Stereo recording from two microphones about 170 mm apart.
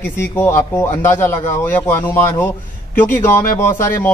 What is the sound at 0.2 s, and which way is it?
A man's voice, 15° left (ahead or behind).